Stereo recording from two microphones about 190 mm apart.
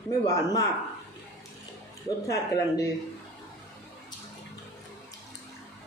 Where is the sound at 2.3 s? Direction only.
20° left (ahead or behind).